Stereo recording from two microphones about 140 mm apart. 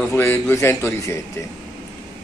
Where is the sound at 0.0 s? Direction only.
20° left (ahead or behind).